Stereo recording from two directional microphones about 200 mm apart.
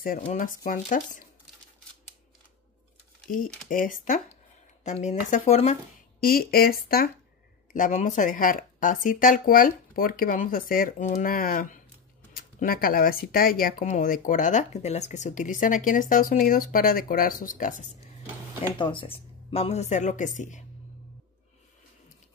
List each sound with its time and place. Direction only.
0.2 s speech: 40° left (ahead or behind)
3.6 s speech: 40° left (ahead or behind)
6.2 s speech: 50° left (ahead or behind)
7.7 s speech: 40° left (ahead or behind)
18.8 s speech: 25° left (ahead or behind)